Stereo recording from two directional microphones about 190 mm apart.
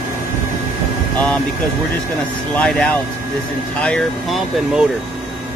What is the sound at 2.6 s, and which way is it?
Speech, 5° left (ahead or behind).